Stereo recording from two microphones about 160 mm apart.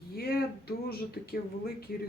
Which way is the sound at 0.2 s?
75° left (ahead or behind).